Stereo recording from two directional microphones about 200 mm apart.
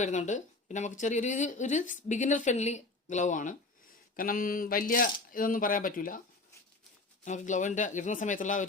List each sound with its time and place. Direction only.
0.0 s speech: 35° left (ahead or behind)
7.3 s speech: 35° left (ahead or behind)